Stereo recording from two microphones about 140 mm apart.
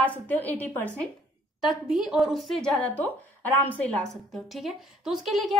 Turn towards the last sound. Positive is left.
turn(degrees=0)  # may be behind; listen again after turning